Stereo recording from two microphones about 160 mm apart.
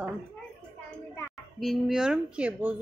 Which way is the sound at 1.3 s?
Centre (ahead or behind).